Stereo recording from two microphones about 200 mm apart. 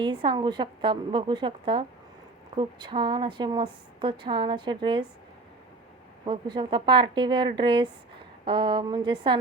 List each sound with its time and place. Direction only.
0.0 s a woman's voice: 25° right (ahead or behind)
6.2 s a woman's voice: 25° right (ahead or behind)